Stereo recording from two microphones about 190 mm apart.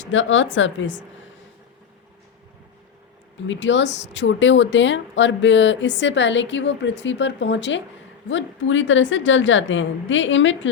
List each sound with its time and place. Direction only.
0.0 s speech: 80° left
3.4 s speech: 75° left (ahead or behind)
8.3 s a woman's voice: 80° left